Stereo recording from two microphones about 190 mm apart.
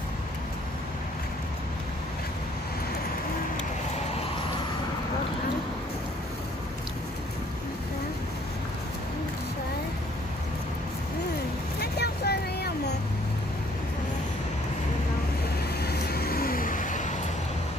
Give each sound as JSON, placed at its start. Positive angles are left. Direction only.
{"t": 11.8, "sound": "vehicle", "side_deg": 55}
{"t": 15.8, "sound": "vehicle", "side_deg": 55}